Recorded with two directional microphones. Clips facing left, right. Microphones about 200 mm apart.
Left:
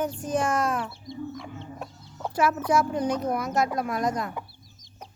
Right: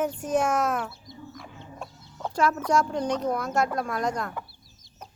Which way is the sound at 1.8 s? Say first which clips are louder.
Right 2 dB; 5° left (ahead or behind).